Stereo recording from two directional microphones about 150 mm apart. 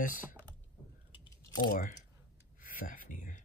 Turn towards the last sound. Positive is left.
turn(degrees=60)  # may be behind; listen again after turning